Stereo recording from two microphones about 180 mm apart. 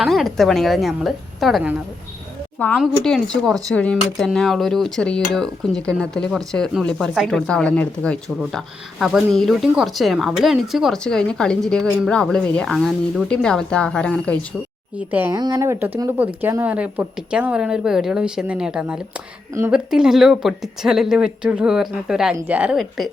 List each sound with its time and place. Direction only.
0.0 s speech: centre (ahead or behind)
3.0 s speech: 5° left (ahead or behind)
14.9 s a woman's voice: 10° right (ahead or behind)
15.3 s a woman's voice: 20° right (ahead or behind); by 23.0 s centre (ahead or behind)